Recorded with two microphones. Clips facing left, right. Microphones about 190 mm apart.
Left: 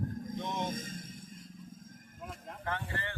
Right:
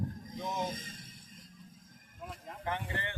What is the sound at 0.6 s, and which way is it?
Vehicle, 50° left (ahead or behind).